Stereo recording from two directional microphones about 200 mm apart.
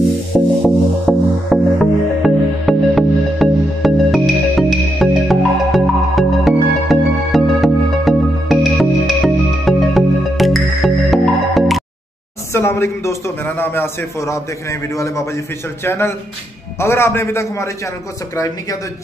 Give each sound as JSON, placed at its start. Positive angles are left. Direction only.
{"t": 0.3, "sound": "music", "side_deg": 5}
{"t": 12.5, "sound": "a man's voice", "side_deg": 15}